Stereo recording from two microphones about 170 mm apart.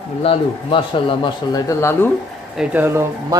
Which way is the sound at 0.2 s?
30° left (ahead or behind).